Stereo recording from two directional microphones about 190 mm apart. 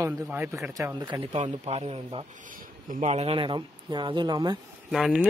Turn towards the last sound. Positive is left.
turn(degrees=0)  # may be behind; listen again after turning